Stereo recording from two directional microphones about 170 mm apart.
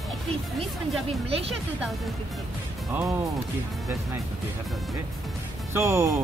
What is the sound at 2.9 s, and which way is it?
Speech, 15° right (ahead or behind).